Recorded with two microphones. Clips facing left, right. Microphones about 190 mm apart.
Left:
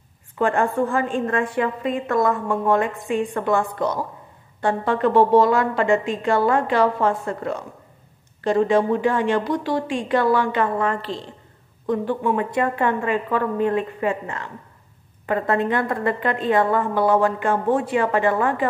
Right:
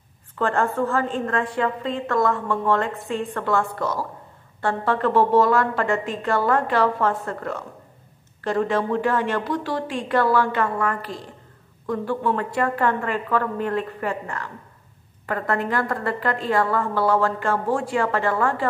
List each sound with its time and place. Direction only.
0.4 s a woman's voice: 15° left (ahead or behind)